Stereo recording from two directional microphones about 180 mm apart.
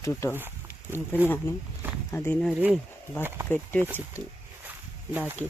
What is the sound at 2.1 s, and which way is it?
Speech, 15° left (ahead or behind).